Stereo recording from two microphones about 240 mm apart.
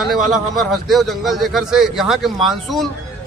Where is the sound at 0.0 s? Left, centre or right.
Centre.